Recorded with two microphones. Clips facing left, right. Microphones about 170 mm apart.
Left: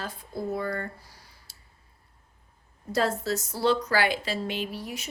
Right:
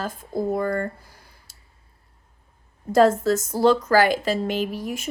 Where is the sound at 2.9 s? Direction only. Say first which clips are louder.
Right 9 dB; 50° right (ahead or behind).